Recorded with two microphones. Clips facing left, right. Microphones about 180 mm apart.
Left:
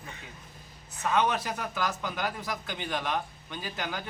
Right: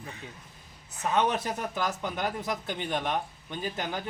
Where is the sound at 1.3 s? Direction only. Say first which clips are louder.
Right 1 dB; 25° right (ahead or behind).